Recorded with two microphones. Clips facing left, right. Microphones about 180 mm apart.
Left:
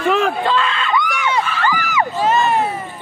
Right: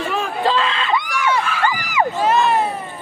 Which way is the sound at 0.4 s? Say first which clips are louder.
Even; 30° right (ahead or behind).